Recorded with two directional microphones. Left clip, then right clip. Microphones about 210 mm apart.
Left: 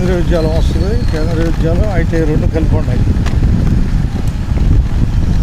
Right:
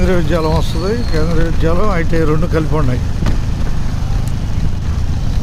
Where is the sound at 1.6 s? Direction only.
15° right (ahead or behind).